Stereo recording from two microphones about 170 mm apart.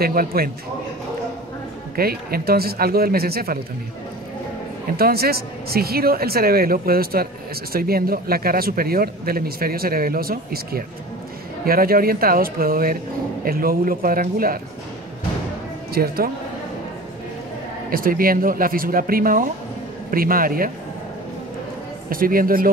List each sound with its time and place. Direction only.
0.0 s speech: 60° right (ahead or behind)
2.0 s speech: 65° right (ahead or behind)
4.9 s speech: 65° right (ahead or behind)
15.9 s speech: 65° right (ahead or behind)
17.8 s speech: 55° right (ahead or behind)
22.1 s speech: 55° right (ahead or behind)